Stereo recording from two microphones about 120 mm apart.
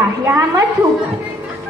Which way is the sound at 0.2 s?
20° right (ahead or behind).